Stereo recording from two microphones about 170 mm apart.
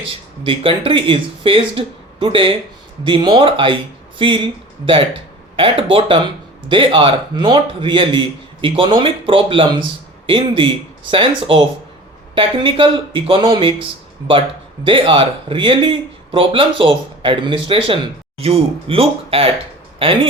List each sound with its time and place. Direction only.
0.0 s speech: 30° right (ahead or behind)
5.5 s speech: 30° right (ahead or behind)
14.8 s speech: 30° right (ahead or behind)